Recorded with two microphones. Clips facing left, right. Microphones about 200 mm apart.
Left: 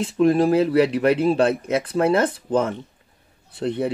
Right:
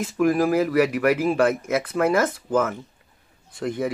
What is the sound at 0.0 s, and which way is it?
A man's voice, 30° left (ahead or behind).